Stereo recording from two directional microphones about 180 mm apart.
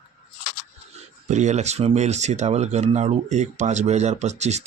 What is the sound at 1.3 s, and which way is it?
Speech, 40° right (ahead or behind).